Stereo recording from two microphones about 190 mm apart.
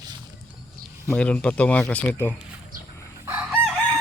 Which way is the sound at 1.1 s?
5° left (ahead or behind).